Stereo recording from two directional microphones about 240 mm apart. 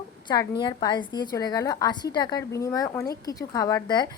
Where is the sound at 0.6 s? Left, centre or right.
Centre.